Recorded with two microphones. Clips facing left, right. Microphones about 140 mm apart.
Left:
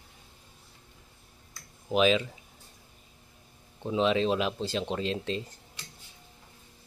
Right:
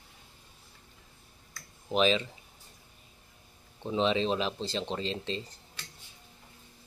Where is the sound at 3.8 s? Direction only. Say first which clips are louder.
Left 2 dB; 5° left (ahead or behind).